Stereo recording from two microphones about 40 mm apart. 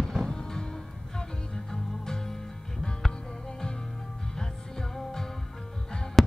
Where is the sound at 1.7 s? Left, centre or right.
Centre.